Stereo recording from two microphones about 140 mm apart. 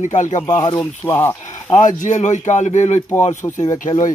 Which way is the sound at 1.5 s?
65° left (ahead or behind).